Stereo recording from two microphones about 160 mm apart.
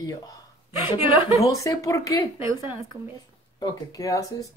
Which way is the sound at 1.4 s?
20° left (ahead or behind).